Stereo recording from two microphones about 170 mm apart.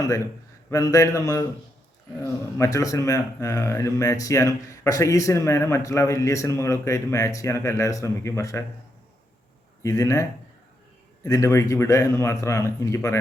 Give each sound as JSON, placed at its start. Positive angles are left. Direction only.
{"t": 0.7, "sound": "a man's voice", "side_deg": 20}
{"t": 9.8, "sound": "a man's voice", "side_deg": 20}